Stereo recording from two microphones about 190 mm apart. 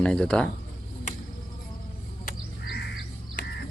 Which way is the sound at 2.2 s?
55° left (ahead or behind).